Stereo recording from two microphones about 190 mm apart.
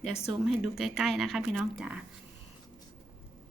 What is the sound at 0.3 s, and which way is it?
A woman's voice, centre (ahead or behind).